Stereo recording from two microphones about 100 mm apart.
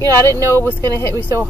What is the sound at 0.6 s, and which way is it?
Speech, 30° left (ahead or behind).